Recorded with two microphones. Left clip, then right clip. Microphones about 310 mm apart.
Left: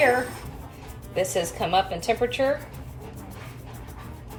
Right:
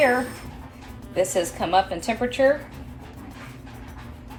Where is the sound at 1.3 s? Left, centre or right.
Centre.